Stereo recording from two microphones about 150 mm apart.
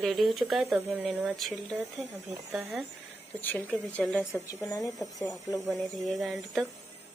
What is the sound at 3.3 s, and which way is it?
Speech, 10° left (ahead or behind).